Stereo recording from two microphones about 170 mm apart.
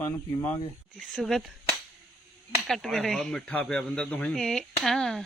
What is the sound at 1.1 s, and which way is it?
Speech, centre (ahead or behind).